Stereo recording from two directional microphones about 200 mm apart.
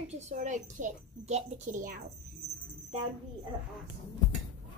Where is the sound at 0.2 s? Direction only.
40° right (ahead or behind).